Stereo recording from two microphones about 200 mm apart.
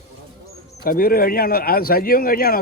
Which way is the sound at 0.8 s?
45° left (ahead or behind).